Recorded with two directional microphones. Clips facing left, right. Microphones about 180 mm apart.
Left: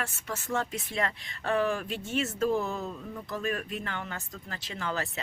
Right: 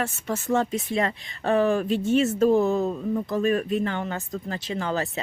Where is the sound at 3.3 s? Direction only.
30° right (ahead or behind).